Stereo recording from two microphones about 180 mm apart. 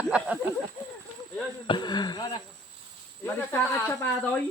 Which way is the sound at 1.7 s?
25° left (ahead or behind).